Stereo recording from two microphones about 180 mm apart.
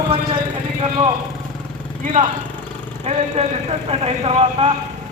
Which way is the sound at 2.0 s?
45° right (ahead or behind).